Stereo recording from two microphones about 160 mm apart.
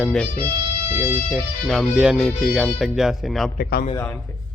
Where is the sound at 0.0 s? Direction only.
5° left (ahead or behind).